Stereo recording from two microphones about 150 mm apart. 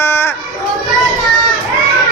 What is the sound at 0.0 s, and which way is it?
Children playing, 15° left (ahead or behind).